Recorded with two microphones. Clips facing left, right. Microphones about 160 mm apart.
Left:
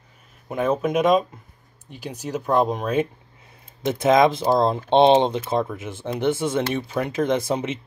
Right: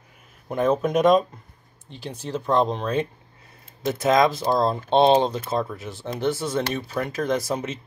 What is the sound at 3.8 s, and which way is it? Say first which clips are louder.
Speech: left 2 dB; 20° left (ahead or behind).